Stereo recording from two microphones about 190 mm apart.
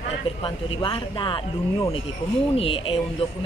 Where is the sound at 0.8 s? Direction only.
25° left (ahead or behind).